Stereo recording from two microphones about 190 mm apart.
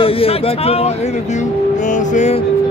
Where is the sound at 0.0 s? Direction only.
30° left (ahead or behind).